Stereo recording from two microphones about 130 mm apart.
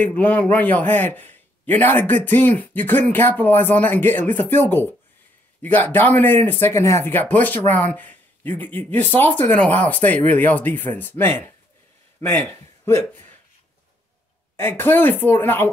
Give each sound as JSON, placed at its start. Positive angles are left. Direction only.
{"t": 0.0, "sound": "a man's voice", "side_deg": 10}
{"t": 14.6, "sound": "a man's voice", "side_deg": 15}